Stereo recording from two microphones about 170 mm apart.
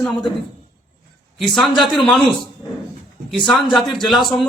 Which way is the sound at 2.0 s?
Centre (ahead or behind).